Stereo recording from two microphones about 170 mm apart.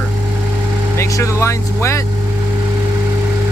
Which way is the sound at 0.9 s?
15° left (ahead or behind).